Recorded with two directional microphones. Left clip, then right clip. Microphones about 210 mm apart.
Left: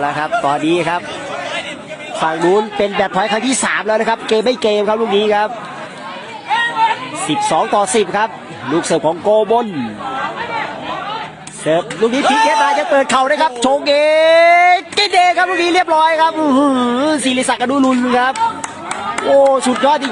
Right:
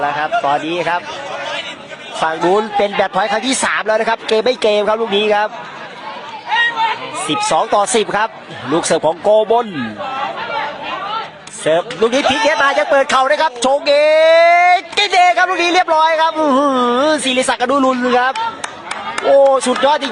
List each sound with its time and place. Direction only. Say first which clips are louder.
0.0 s a man's voice: even; 5° left (ahead or behind)
2.2 s speech: even; 15° right (ahead or behind)
7.3 s a man's voice: even; centre (ahead or behind)
7.6 s speech: even; 20° right (ahead or behind)
11.6 s speech: right 1 dB; 15° right (ahead or behind)